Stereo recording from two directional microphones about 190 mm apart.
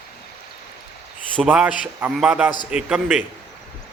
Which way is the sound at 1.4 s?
5° right (ahead or behind).